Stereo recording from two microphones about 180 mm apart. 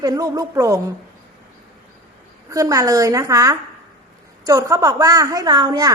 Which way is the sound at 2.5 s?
20° right (ahead or behind).